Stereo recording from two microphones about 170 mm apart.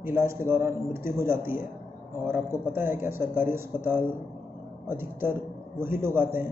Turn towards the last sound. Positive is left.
turn(degrees=-15)  # may be behind; listen again after turning